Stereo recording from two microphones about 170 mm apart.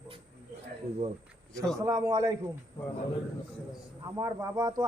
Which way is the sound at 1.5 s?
5° left (ahead or behind).